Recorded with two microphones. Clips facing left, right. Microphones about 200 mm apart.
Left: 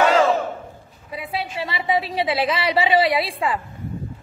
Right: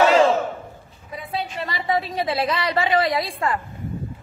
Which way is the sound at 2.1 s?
5° left (ahead or behind).